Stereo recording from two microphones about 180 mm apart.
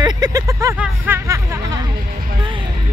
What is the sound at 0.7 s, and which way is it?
Speech, 5° right (ahead or behind).